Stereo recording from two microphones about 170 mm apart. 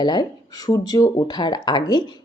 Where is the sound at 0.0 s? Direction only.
25° left (ahead or behind).